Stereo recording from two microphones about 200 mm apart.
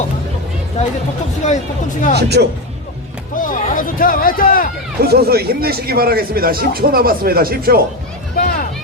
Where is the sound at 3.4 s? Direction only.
40° left (ahead or behind).